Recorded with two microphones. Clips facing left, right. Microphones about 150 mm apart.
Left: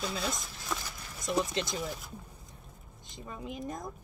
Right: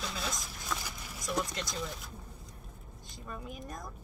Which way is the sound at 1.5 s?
25° left (ahead or behind).